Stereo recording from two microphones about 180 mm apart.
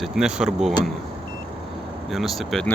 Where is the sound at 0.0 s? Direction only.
5° right (ahead or behind).